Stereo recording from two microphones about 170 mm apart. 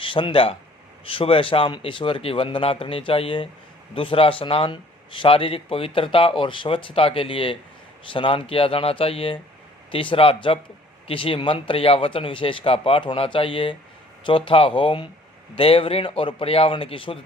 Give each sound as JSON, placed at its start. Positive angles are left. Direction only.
{"t": 0.0, "sound": "speech", "side_deg": 30}